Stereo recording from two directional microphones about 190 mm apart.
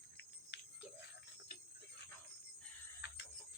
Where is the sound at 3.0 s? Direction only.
65° left (ahead or behind).